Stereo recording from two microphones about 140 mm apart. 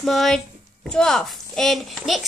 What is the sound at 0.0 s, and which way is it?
A woman's voice, centre (ahead or behind).